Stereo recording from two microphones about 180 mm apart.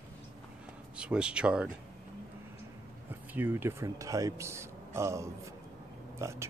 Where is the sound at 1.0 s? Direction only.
5° right (ahead or behind).